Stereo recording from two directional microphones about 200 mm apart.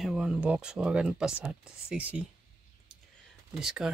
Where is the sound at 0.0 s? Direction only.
5° right (ahead or behind).